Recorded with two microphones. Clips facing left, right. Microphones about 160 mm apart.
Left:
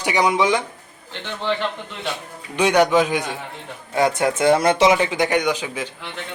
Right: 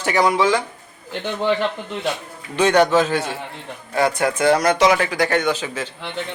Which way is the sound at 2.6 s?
10° left (ahead or behind).